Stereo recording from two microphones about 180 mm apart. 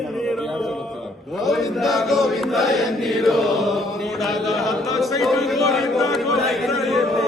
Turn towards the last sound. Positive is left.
turn(degrees=0)  # may be behind; listen again after turning